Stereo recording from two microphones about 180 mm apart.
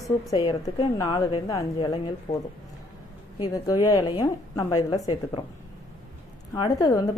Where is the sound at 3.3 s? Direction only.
20° left (ahead or behind).